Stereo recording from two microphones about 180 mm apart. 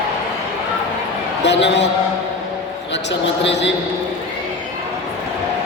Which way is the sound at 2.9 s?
75° left (ahead or behind).